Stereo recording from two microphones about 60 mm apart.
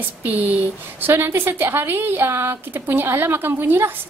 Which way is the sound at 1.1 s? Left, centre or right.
Right.